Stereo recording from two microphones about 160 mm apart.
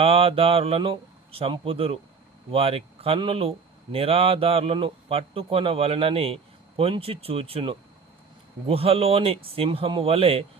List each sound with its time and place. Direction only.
0.0 s a man's voice: 35° right (ahead or behind)